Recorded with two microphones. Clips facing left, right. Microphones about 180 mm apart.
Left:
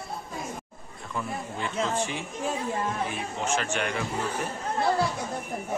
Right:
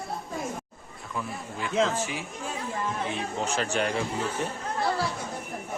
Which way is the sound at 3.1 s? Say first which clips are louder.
Even; 35° right (ahead or behind).